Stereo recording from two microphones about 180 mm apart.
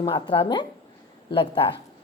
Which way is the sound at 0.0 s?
30° left (ahead or behind).